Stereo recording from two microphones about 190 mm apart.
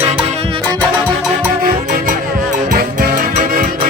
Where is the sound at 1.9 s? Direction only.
40° right (ahead or behind).